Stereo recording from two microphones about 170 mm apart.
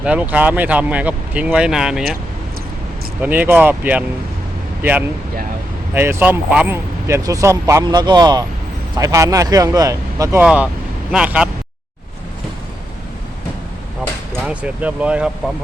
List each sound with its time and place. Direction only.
0.0 s speech: 10° right (ahead or behind)
3.2 s speech: 10° right (ahead or behind)
10.4 s speech: 5° right (ahead or behind)
14.4 s speech: 10° right (ahead or behind)